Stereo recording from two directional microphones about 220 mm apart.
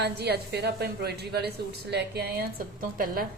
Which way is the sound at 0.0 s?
50° right (ahead or behind).